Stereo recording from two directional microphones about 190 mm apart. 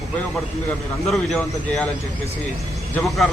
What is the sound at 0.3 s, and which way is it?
A man's voice, centre (ahead or behind).